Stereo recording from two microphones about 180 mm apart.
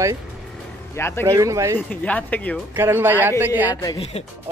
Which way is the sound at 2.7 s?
15° right (ahead or behind).